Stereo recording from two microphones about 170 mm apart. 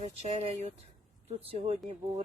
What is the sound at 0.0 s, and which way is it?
Speech, 40° right (ahead or behind).